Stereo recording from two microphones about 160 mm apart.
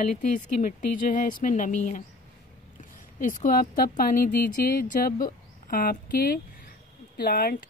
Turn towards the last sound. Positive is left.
turn(degrees=70)  # may be behind; listen again after turning